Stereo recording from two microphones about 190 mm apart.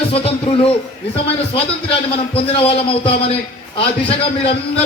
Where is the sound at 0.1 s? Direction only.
30° left (ahead or behind).